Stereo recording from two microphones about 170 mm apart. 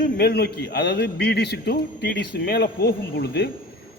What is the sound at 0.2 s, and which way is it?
A man's voice, 70° left (ahead or behind).